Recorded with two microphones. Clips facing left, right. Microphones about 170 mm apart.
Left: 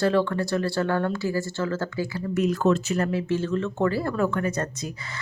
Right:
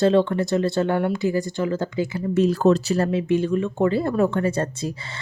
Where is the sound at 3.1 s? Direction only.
15° right (ahead or behind).